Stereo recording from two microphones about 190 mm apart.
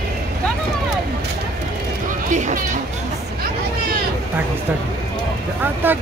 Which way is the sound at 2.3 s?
40° right (ahead or behind).